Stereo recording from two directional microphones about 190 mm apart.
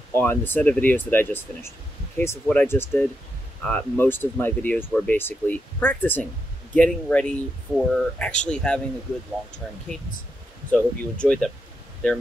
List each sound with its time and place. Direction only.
0.1 s speech: 10° left (ahead or behind)
9.9 s speech: 5° left (ahead or behind)